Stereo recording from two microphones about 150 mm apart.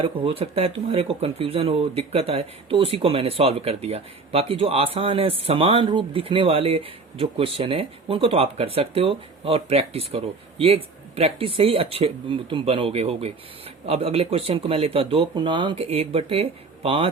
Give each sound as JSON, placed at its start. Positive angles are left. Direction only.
{"t": 0.0, "sound": "speech", "side_deg": -35}